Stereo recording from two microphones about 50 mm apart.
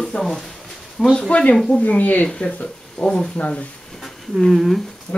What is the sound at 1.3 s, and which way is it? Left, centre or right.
Speech, left.